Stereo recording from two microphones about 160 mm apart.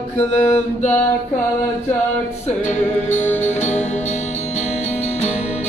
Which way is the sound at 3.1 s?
10° left (ahead or behind).